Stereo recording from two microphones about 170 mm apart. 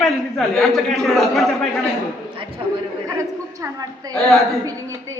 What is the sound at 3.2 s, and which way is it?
Speech, 20° right (ahead or behind).